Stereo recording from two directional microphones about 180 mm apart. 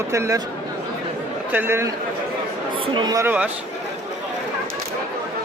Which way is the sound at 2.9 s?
20° right (ahead or behind).